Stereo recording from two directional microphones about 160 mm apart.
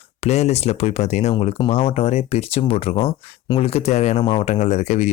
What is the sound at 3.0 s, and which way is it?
Speech, 25° left (ahead or behind).